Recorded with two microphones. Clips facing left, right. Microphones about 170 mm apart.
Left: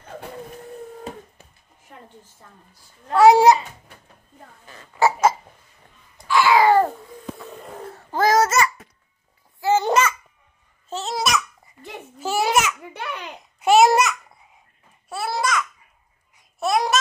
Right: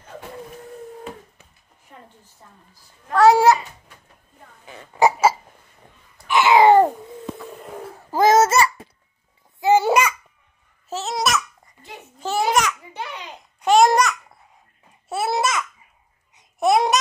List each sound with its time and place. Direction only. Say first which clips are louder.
3.1 s a child's voice: left 1 dB; 15° left (ahead or behind)
4.9 s a sound: right 1 dB; 15° right (ahead or behind)
6.2 s babbling: right 2 dB; 20° right (ahead or behind)
7.8 s a sound: right 1 dB; 10° right (ahead or behind)
8.2 s babbling: right 3 dB; 25° right (ahead or behind)
9.6 s babbling: right 2 dB; 15° right (ahead or behind)
10.9 s babbling: right 1 dB; centre (ahead or behind)
12.9 s a sound: left 1 dB; 60° left (ahead or behind)
13.4 s babbling: even; 5° left (ahead or behind)
15.0 s babbling: right 3 dB; 25° right (ahead or behind)